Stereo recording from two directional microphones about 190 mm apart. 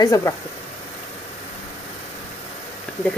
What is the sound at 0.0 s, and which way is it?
Speech, 20° left (ahead or behind).